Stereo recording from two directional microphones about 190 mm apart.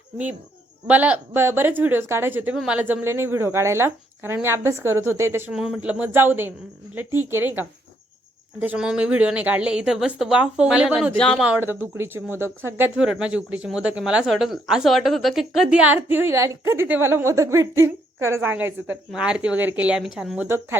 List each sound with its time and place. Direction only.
0.9 s a woman's voice: 5° right (ahead or behind)